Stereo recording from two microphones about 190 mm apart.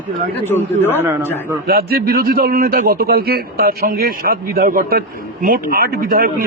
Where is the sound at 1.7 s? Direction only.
50° right (ahead or behind).